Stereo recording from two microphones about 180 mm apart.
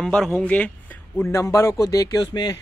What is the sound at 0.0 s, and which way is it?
Speech, centre (ahead or behind).